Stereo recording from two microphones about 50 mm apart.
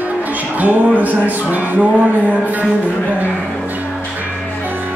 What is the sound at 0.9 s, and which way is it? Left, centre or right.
Music, right.